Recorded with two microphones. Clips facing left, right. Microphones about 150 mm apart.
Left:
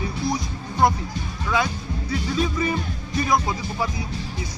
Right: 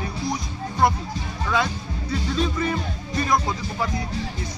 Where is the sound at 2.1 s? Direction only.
5° left (ahead or behind).